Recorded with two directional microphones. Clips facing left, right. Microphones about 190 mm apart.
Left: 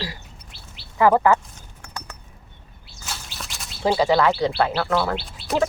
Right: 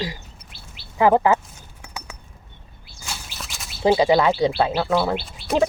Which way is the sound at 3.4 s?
Centre (ahead or behind).